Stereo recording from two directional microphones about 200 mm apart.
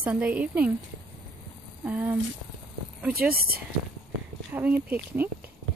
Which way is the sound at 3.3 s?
50° right (ahead or behind).